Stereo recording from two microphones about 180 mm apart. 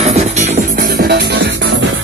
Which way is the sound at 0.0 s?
35° right (ahead or behind).